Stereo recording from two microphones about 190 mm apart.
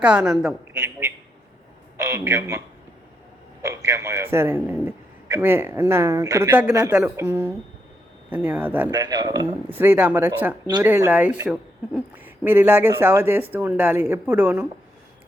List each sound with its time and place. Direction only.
0.0 s a woman's voice: 5° right (ahead or behind)
0.7 s a sound: 15° right (ahead or behind)
2.0 s speech: 15° right (ahead or behind)
3.6 s a man's voice: 15° right (ahead or behind)
8.9 s a man's voice: 20° right (ahead or behind)